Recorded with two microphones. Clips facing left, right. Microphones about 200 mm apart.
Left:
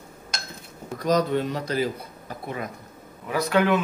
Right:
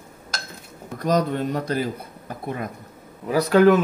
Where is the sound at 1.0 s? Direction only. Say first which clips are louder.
Even; 55° right (ahead or behind).